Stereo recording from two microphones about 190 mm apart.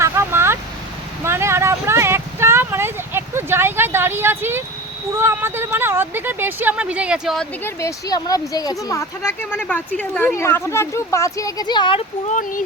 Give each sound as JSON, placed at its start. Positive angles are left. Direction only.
{"t": 0.0, "sound": "vehicle", "side_deg": -15}
{"t": 1.2, "sound": "a sound", "side_deg": -15}
{"t": 5.1, "sound": "speech", "side_deg": -10}
{"t": 7.6, "sound": "speech", "side_deg": 15}
{"t": 12.3, "sound": "speech", "side_deg": 45}